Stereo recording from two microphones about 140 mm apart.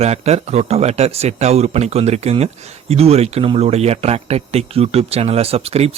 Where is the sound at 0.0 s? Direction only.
50° right (ahead or behind).